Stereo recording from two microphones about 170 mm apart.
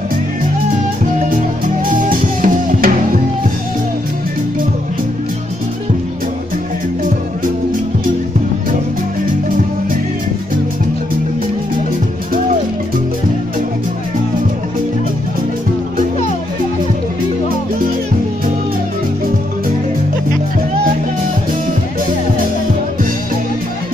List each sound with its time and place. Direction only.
2.0 s music: 55° right (ahead or behind)